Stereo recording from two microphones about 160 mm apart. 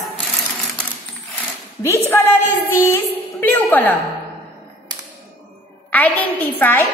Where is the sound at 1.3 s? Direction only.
15° left (ahead or behind).